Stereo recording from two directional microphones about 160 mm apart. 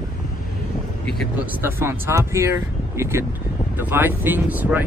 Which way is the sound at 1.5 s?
15° right (ahead or behind).